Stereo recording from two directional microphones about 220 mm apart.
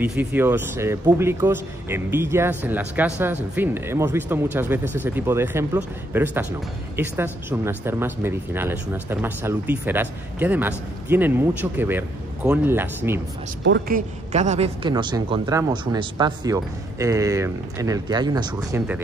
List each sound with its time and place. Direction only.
0.0 s speech: 5° right (ahead or behind)
13.7 s a woman's voice: 55° right (ahead or behind)
13.9 s a woman's voice: 35° right (ahead or behind); by 19.0 s 10° right (ahead or behind)